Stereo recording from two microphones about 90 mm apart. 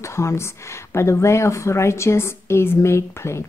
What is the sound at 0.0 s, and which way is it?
A woman's voice, 30° left (ahead or behind).